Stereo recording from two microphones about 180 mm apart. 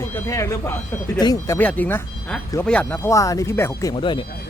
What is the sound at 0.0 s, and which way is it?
Speech, 15° left (ahead or behind).